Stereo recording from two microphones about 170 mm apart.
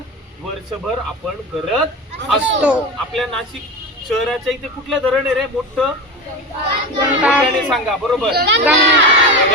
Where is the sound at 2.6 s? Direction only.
5° right (ahead or behind).